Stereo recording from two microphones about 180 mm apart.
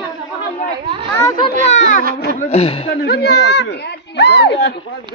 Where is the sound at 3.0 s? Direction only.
65° left (ahead or behind).